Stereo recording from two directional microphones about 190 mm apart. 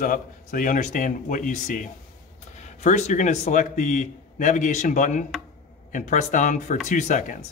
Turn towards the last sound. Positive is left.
turn(degrees=40)  # may be behind; listen again after turning